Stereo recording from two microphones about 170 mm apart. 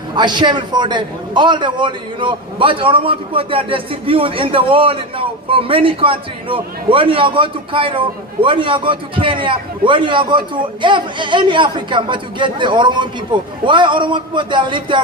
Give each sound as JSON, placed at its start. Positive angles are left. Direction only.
{"t": 0.1, "sound": "a man's voice", "side_deg": -25}